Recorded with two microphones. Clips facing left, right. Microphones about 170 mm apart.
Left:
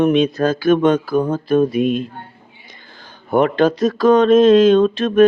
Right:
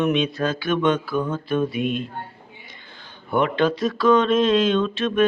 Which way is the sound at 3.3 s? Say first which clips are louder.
Left 6 dB; 40° left (ahead or behind).